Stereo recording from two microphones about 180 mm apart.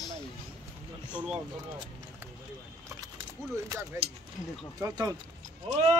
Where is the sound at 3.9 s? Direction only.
15° right (ahead or behind).